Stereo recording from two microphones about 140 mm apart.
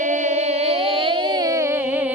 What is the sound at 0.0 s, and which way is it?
Music, 60° right (ahead or behind).